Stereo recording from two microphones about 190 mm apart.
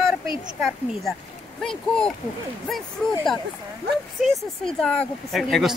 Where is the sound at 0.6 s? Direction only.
Centre (ahead or behind).